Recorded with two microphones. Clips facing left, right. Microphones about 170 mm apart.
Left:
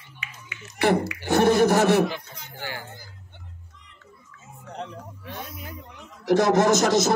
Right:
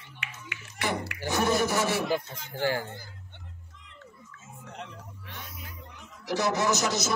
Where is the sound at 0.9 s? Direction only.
55° left (ahead or behind).